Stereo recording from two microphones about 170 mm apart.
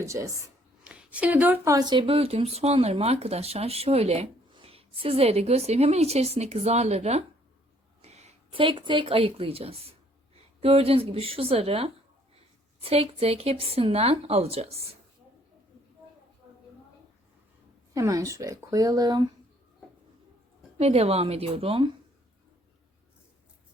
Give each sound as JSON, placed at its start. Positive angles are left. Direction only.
{"t": 0.0, "sound": "speech", "side_deg": -20}
{"t": 0.9, "sound": "speech", "side_deg": -5}
{"t": 17.9, "sound": "speech", "side_deg": -20}
{"t": 20.7, "sound": "speech", "side_deg": -40}